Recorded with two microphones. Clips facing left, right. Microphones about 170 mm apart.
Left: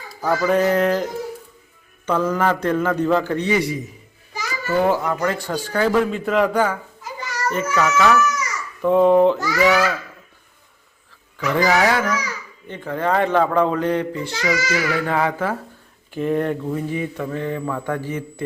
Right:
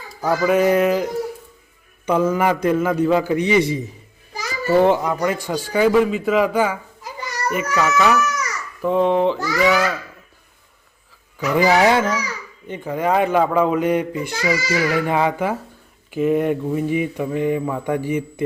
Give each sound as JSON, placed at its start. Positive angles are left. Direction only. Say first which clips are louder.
{"t": 0.3, "sound": "a child's voice", "louder": "right 2 dB", "side_deg": -5}
{"t": 8.8, "sound": "a child's voice", "louder": "left 3 dB", "side_deg": 0}
{"t": 11.3, "sound": "a child's voice", "louder": "right 2 dB", "side_deg": -15}
{"t": 11.7, "sound": "a child's voice", "louder": "right 4 dB", "side_deg": -25}
{"t": 12.6, "sound": "a child's voice", "louder": "right 1 dB", "side_deg": -15}